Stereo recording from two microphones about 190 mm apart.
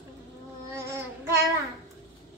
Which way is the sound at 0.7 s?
15° right (ahead or behind).